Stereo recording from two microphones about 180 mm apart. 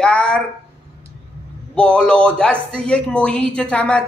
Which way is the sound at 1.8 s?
5° left (ahead or behind).